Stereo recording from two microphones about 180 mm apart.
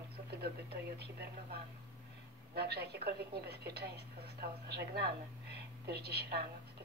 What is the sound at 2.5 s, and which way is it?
Speech, 60° right (ahead or behind).